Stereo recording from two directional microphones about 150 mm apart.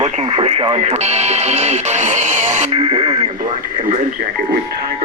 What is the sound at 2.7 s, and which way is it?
Speech, 35° right (ahead or behind).